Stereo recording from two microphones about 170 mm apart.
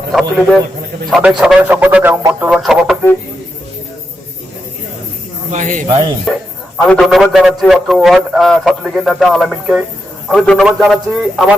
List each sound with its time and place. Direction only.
0.1 s a man's voice: centre (ahead or behind)
2.5 s speech: centre (ahead or behind)
5.5 s speech: 50° right (ahead or behind)
5.9 s speech: 25° right (ahead or behind)
6.7 s a man's voice: 5° left (ahead or behind)